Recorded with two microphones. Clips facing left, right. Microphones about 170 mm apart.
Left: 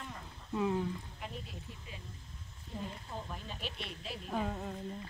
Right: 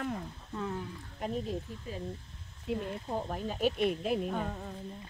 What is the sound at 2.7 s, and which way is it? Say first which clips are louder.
Speech: right 10 dB; 75° right (ahead or behind).